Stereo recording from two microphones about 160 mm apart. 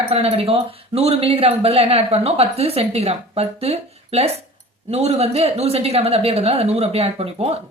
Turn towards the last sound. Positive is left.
turn(degrees=-40)  # may be behind; listen again after turning